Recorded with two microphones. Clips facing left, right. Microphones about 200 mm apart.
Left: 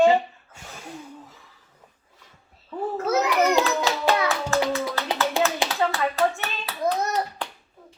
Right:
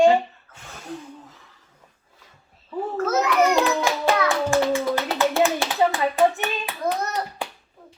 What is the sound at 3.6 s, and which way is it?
Hands, 15° right (ahead or behind).